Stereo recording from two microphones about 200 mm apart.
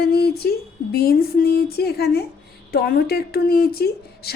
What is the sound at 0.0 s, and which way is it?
A woman's voice, 50° left (ahead or behind).